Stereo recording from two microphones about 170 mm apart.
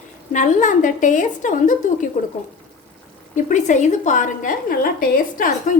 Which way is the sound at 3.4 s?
45° left (ahead or behind).